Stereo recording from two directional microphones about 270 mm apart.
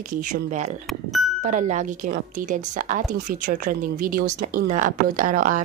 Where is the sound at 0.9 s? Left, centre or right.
Centre.